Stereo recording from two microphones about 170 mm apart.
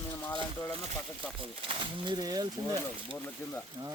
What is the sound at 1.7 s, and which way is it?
Speech, 30° right (ahead or behind).